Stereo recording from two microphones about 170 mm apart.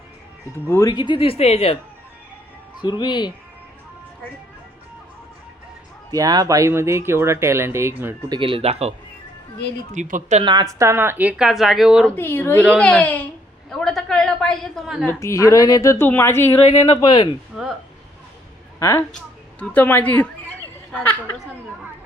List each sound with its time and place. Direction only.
0.7 s speech: 20° left (ahead or behind); by 1.8 s 35° left (ahead or behind)
2.8 s speech: 25° left (ahead or behind)
6.1 s speech: 20° right (ahead or behind)
8.3 s speech: 30° right (ahead or behind)
9.9 s speech: 50° right (ahead or behind)
10.4 s speech: 25° right (ahead or behind); by 12.1 s 5° right (ahead or behind)
12.1 s a woman's voice: 15° left (ahead or behind)
13.7 s a sound: centre (ahead or behind)
15.0 s a woman's voice: 15° left (ahead or behind)
17.5 s speech: centre (ahead or behind)
18.8 s a woman's voice: 15° left (ahead or behind)